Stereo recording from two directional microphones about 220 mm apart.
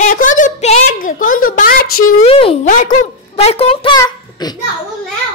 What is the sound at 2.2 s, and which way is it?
Speech, 25° left (ahead or behind).